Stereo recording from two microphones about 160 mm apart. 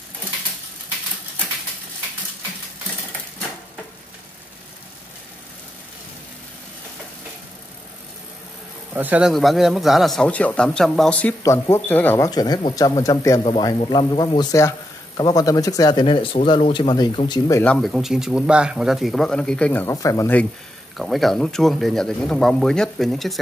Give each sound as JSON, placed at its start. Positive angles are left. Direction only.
{"t": 8.9, "sound": "speech", "side_deg": -10}
{"t": 12.3, "sound": "speech", "side_deg": 25}
{"t": 17.6, "sound": "speech", "side_deg": 5}
{"t": 21.0, "sound": "speech", "side_deg": 0}